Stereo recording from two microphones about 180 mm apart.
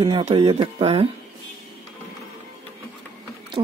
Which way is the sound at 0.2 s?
35° right (ahead or behind).